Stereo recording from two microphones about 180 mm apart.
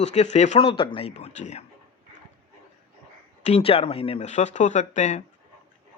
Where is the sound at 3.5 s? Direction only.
35° left (ahead or behind).